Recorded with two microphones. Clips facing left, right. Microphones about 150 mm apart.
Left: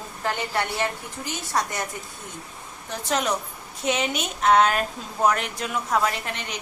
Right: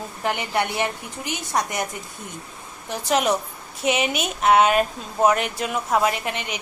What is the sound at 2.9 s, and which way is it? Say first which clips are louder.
A woman's voice: right 4 dB; 15° right (ahead or behind).